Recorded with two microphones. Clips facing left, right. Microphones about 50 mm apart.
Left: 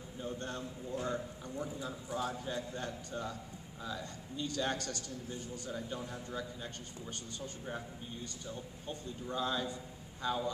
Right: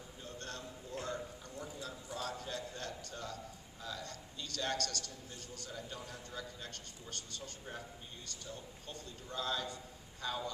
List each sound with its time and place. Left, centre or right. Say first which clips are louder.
0.2 s a man's voice: left 6 dB; centre